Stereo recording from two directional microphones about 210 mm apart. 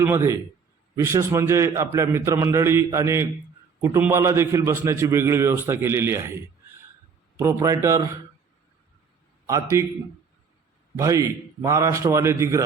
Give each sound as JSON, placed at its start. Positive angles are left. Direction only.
{"t": 0.0, "sound": "a man's voice", "side_deg": -15}
{"t": 9.5, "sound": "a man's voice", "side_deg": -15}
{"t": 10.9, "sound": "a man's voice", "side_deg": -15}